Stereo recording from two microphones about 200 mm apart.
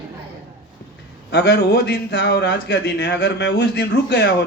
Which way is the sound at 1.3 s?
60° left (ahead or behind).